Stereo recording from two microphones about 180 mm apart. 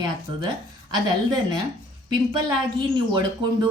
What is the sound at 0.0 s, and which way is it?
Speech, 25° right (ahead or behind).